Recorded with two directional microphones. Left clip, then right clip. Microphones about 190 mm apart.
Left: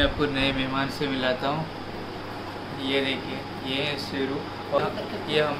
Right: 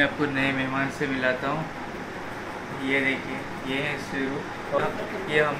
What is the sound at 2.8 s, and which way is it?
Speech, 5° left (ahead or behind).